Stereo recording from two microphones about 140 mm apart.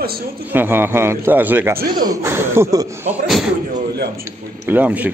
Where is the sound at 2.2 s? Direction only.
15° right (ahead or behind).